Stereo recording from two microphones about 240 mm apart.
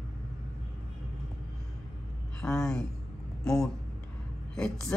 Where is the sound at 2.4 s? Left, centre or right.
Centre.